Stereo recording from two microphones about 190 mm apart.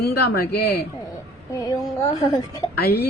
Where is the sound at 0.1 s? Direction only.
55° left (ahead or behind).